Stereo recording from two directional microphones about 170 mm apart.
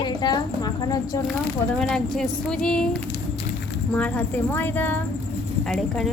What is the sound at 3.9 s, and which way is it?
A woman's voice, 10° left (ahead or behind).